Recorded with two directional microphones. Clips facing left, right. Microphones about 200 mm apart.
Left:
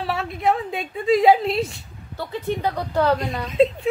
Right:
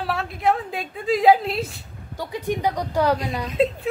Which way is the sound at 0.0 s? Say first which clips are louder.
Even; centre (ahead or behind).